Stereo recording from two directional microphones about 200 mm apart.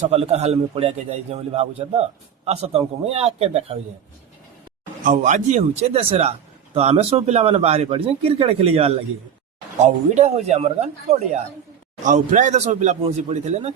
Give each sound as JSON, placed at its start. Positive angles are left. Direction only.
{"t": 0.1, "sound": "a man's voice", "side_deg": -30}
{"t": 5.0, "sound": "a man's voice", "side_deg": -40}